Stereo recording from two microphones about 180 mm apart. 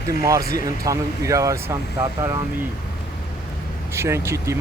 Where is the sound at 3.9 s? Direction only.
15° right (ahead or behind).